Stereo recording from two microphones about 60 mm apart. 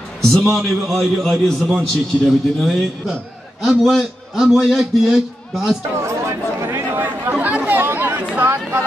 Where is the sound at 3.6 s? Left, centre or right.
Centre.